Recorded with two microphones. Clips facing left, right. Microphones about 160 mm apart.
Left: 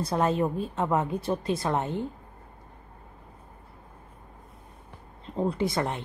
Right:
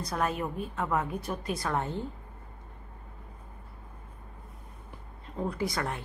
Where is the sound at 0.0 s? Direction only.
25° left (ahead or behind).